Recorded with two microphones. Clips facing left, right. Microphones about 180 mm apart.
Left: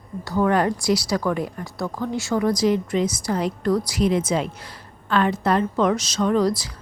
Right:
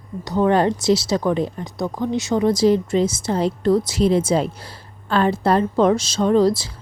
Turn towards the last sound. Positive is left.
turn(degrees=-25)  # may be behind; listen again after turning